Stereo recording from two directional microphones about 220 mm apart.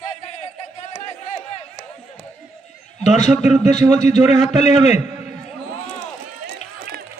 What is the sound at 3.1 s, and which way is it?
A man's voice, 30° left (ahead or behind).